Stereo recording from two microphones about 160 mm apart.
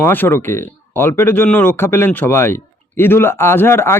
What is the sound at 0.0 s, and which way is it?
Speech, 10° left (ahead or behind).